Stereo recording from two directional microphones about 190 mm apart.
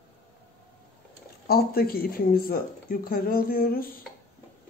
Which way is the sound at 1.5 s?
55° left (ahead or behind).